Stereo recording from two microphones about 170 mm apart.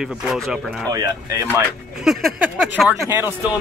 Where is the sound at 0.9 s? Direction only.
20° right (ahead or behind).